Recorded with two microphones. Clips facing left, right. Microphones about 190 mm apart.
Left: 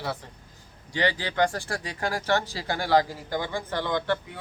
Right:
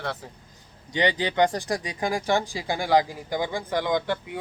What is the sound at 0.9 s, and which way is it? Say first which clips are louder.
A woman's voice: right 3 dB; 20° right (ahead or behind).